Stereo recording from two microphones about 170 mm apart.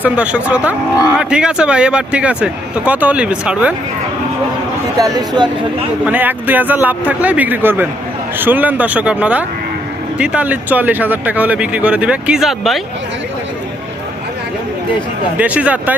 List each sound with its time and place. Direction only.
0.0 s speech: 5° right (ahead or behind)
4.9 s speech: 20° right (ahead or behind)
6.1 s speech: 10° right (ahead or behind)
15.4 s speech: 10° right (ahead or behind)